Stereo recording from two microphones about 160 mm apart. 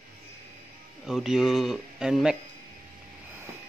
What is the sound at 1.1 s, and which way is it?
Speech, 5° right (ahead or behind).